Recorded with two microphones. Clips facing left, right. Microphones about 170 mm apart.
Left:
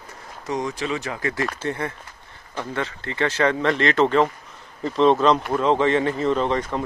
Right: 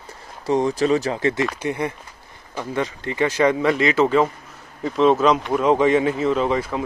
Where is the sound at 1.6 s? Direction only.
15° right (ahead or behind).